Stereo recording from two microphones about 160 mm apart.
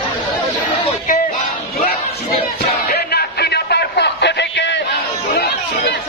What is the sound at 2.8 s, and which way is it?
Music, 80° left.